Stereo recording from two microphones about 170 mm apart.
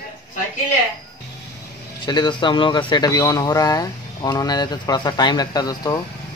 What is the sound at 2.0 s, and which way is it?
Speech, 25° left (ahead or behind).